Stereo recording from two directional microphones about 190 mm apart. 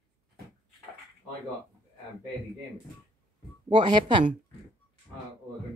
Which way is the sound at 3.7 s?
25° right (ahead or behind).